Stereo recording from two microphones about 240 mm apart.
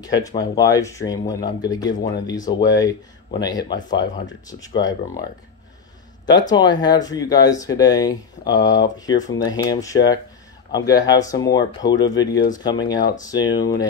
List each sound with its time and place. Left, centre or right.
0.0 s speech: centre
6.5 s speech: centre